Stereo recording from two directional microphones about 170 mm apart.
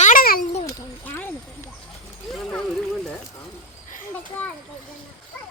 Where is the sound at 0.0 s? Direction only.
55° left (ahead or behind).